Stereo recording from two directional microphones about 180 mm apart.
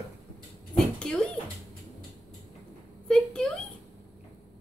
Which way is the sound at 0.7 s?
5° left (ahead or behind).